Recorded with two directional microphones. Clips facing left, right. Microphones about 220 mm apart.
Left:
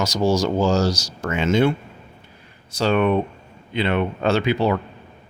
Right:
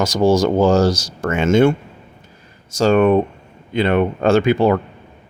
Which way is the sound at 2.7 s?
45° right (ahead or behind).